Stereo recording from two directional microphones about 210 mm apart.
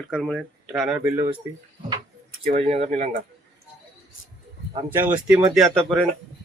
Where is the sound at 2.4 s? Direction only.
35° right (ahead or behind).